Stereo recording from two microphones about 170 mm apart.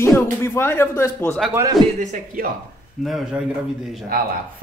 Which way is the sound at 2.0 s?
50° right (ahead or behind).